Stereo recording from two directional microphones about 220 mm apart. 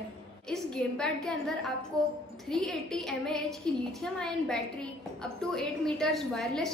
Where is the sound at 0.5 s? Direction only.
5° left (ahead or behind).